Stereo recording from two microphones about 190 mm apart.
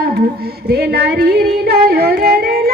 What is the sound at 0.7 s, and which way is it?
Speech, 55° right (ahead or behind).